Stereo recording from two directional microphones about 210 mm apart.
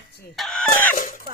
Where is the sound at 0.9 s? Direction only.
40° left (ahead or behind).